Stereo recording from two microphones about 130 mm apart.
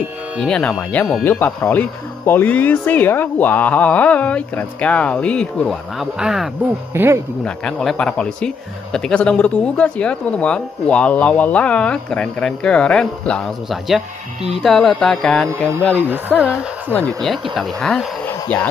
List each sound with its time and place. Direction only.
0.4 s speech: 5° left (ahead or behind)
6.9 s speech: 20° right (ahead or behind)
7.4 s speech: 5° left (ahead or behind)
16.1 s speech: 10° right (ahead or behind)
17.2 s speech: centre (ahead or behind)